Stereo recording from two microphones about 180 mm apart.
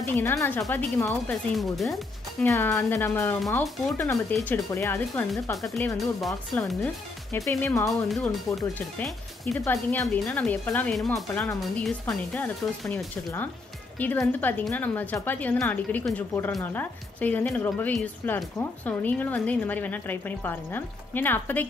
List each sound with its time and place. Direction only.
0.0 s a woman's voice: 15° left (ahead or behind)
1.6 s speech: centre (ahead or behind)
2.4 s a woman's voice: 15° left (ahead or behind)
5.9 s speech: centre (ahead or behind)
7.3 s a woman's voice: 15° left (ahead or behind)
8.1 s speech: centre (ahead or behind)
9.6 s a woman's voice: 15° left (ahead or behind)
10.0 s a woman's voice: 5° left (ahead or behind)